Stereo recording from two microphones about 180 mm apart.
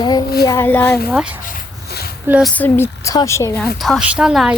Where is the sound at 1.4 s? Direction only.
55° left (ahead or behind).